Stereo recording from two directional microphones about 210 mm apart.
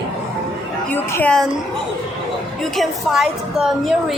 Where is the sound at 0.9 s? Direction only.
5° left (ahead or behind).